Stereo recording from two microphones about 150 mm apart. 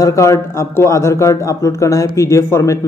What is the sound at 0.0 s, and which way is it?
A man's voice, 20° left (ahead or behind).